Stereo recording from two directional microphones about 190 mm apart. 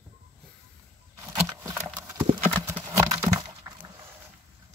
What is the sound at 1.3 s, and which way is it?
Horse, 15° right (ahead or behind).